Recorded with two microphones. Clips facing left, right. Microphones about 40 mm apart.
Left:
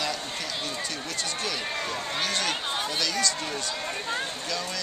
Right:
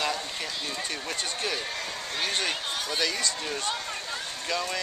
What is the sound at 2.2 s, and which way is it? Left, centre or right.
Speech, centre.